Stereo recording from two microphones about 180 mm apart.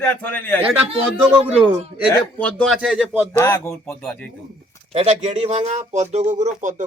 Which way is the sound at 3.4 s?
15° left (ahead or behind).